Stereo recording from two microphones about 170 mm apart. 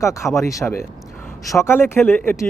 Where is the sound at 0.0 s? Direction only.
15° left (ahead or behind).